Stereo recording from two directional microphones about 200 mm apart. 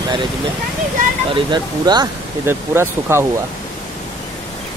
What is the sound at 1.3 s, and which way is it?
Speech, 20° right (ahead or behind).